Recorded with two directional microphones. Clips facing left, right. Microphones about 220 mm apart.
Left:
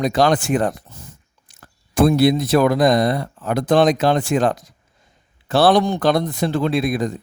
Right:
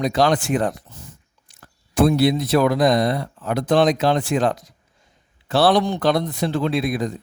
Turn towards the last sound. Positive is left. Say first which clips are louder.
# left 2 dB
turn(degrees=50)  # may be behind; listen again after turning